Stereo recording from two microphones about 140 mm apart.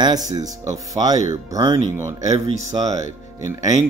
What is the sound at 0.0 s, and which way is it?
Speech, 25° right (ahead or behind).